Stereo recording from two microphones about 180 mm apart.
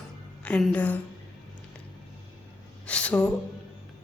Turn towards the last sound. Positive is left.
turn(degrees=5)  # may be behind; listen again after turning